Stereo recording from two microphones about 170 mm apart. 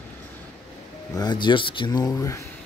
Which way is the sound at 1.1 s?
25° left (ahead or behind).